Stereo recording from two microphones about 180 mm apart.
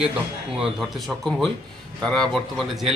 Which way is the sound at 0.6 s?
Centre (ahead or behind).